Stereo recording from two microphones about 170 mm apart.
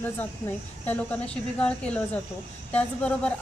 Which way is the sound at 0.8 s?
10° left (ahead or behind).